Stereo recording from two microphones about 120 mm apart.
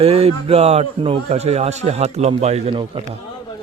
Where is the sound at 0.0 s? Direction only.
55° right (ahead or behind).